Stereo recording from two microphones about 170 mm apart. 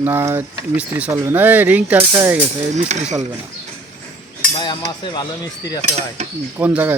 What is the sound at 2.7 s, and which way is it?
Speech, 40° right (ahead or behind).